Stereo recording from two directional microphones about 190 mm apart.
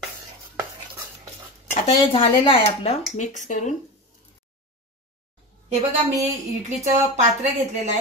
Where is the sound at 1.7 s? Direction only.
30° left (ahead or behind).